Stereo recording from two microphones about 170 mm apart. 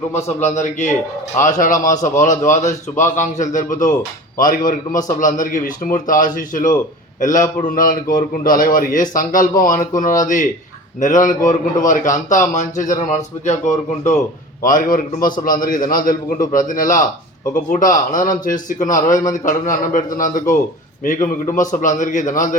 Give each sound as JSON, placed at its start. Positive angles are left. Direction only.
{"t": 0.3, "sound": "a man's voice", "side_deg": 45}